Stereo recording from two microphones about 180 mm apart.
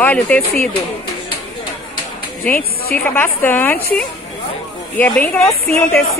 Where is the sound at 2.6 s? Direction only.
55° left (ahead or behind).